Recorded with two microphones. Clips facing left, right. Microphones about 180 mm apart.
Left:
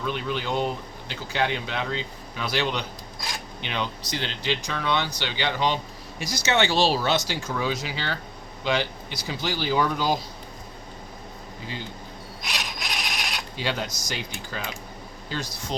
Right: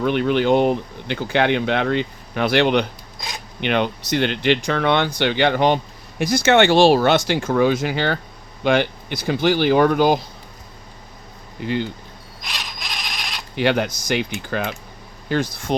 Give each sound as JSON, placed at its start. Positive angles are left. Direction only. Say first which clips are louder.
{"t": 0.0, "sound": "speech", "louder": "right 11 dB", "side_deg": -65}
{"t": 11.6, "sound": "speech", "louder": "right 14 dB", "side_deg": -65}
{"t": 12.5, "sound": "a sound", "louder": "even", "side_deg": 10}
{"t": 13.6, "sound": "speech", "louder": "right 11 dB", "side_deg": -60}